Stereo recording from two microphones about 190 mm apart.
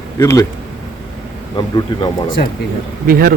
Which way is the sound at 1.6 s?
20° left (ahead or behind).